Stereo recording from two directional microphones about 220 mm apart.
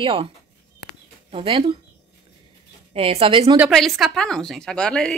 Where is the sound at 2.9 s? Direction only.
25° right (ahead or behind).